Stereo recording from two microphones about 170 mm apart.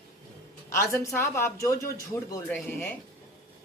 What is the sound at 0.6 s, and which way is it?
Speech, 15° left (ahead or behind).